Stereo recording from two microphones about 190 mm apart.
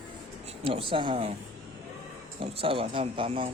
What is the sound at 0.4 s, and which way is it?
Speech, 30° right (ahead or behind).